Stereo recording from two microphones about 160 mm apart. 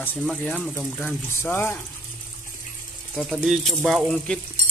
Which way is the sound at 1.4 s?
15° left (ahead or behind).